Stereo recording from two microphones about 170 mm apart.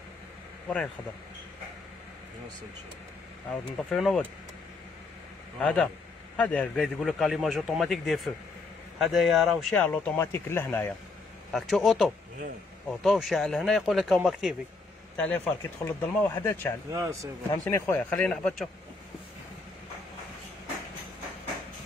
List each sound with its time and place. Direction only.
3.7 s a man's voice: 5° left (ahead or behind)
5.6 s a man's voice: 5° left (ahead or behind)
9.8 s speech: 10° left (ahead or behind)
11.5 s a man's voice: centre (ahead or behind)
15.1 s speech: 10° left (ahead or behind)
16.9 s speech: 20° right (ahead or behind)
17.5 s speech: 15° left (ahead or behind)